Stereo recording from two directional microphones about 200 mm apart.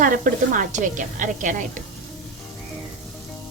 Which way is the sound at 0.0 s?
40° right (ahead or behind).